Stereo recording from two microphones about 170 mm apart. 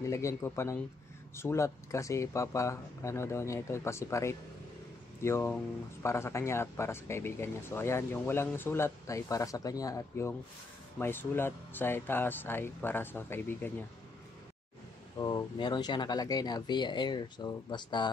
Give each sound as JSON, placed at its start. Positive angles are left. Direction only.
{"t": 0.0, "sound": "speech", "side_deg": 20}
{"t": 15.1, "sound": "speech", "side_deg": 25}